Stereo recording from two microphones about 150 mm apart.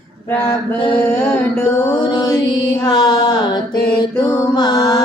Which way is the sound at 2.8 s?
25° left (ahead or behind).